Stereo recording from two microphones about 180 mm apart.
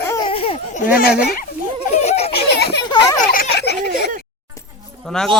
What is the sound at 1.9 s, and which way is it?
Baby laughter, 35° left (ahead or behind).